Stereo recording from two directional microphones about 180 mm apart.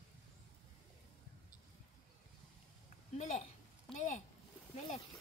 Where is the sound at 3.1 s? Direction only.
40° left (ahead or behind).